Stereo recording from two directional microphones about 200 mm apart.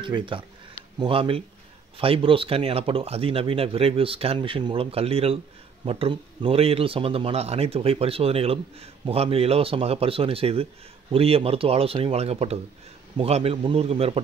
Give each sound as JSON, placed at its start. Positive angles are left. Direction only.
{"t": 0.0, "sound": "speech", "side_deg": -25}